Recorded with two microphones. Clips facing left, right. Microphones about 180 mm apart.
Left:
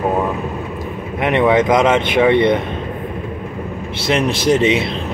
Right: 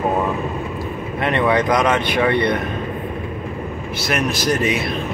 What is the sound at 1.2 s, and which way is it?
Speech, 20° left (ahead or behind).